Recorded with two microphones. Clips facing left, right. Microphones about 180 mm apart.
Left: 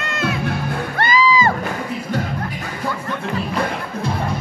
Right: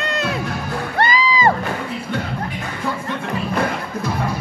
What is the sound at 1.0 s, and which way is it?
Music, 30° right (ahead or behind).